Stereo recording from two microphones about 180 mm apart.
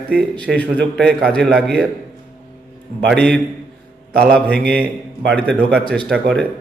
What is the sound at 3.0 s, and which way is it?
A man's voice, 5° left (ahead or behind).